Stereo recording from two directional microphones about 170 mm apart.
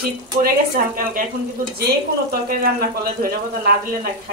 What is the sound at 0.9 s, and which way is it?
Speech, 55° right (ahead or behind).